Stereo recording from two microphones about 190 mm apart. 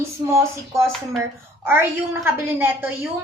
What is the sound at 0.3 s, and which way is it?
A woman's voice, 15° right (ahead or behind).